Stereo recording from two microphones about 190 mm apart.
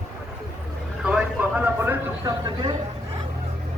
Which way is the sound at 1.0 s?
5° right (ahead or behind).